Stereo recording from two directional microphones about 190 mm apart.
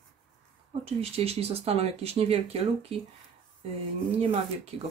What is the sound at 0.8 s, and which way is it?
Speech, 30° right (ahead or behind).